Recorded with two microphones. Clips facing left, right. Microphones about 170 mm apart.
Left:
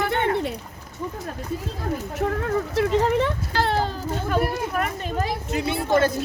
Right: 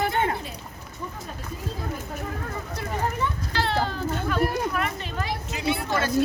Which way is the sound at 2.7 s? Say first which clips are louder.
Left 9 dB; 85° left.